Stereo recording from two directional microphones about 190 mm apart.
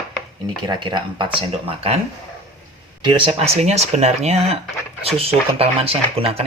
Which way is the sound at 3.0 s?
25° right (ahead or behind).